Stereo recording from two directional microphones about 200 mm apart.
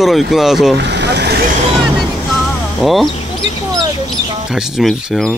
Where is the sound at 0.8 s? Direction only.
60° right (ahead or behind).